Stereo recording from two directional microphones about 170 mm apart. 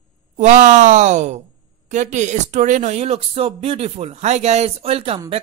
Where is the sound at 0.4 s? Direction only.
45° right (ahead or behind).